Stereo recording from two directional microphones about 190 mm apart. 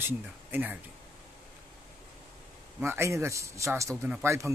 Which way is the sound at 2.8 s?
15° right (ahead or behind).